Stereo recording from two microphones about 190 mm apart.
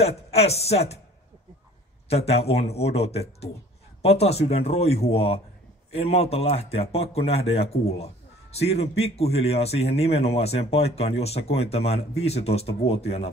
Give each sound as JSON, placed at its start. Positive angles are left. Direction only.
{"t": 0.0, "sound": "speech", "side_deg": 35}
{"t": 2.0, "sound": "speech", "side_deg": 35}